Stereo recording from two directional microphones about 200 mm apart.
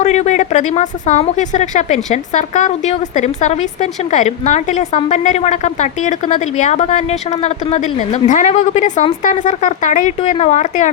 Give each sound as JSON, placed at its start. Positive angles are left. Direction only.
{"t": 0.0, "sound": "a woman's voice", "side_deg": 35}